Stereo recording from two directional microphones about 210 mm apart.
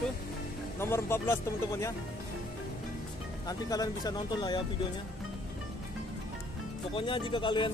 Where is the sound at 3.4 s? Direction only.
20° left (ahead or behind).